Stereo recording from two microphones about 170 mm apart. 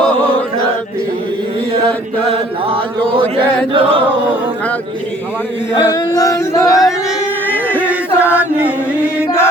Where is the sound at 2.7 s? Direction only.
30° right (ahead or behind).